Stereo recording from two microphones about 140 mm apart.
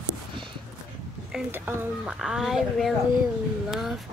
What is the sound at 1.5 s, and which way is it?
Speech, 15° right (ahead or behind).